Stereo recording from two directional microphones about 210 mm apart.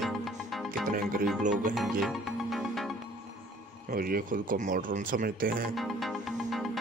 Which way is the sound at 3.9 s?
45° right (ahead or behind).